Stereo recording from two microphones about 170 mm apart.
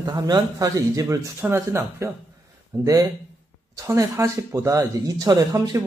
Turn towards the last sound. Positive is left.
turn(degrees=-20)  # may be behind; listen again after turning